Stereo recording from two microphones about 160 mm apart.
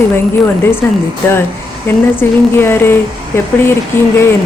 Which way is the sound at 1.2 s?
10° left (ahead or behind).